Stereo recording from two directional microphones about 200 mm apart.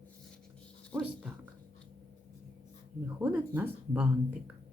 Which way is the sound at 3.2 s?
10° right (ahead or behind).